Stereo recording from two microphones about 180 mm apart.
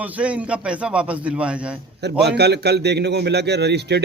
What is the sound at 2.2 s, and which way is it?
Speech, 65° right (ahead or behind).